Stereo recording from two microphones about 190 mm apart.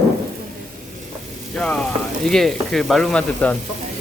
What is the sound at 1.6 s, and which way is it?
Speech, 5° left (ahead or behind).